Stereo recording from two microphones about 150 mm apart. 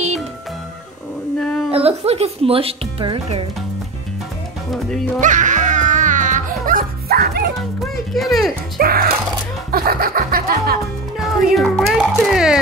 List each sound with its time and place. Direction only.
1.7 s speech: 40° right (ahead or behind)
4.6 s speech: centre (ahead or behind)
5.2 s music: 55° right (ahead or behind); by 7.4 s 90° right
7.5 s music: centre (ahead or behind)
8.7 s music: 80° right
11.1 s speech: centre (ahead or behind)
12.0 s music: 5° right (ahead or behind)